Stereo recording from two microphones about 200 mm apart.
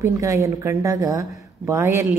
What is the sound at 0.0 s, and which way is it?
A woman's voice, 15° right (ahead or behind).